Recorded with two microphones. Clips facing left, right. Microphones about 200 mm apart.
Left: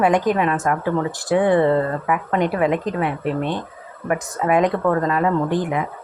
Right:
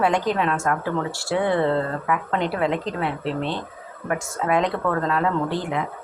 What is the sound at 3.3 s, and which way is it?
Speech, 50° left (ahead or behind).